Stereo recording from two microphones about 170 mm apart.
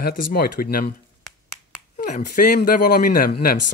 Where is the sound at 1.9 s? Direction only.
50° left (ahead or behind).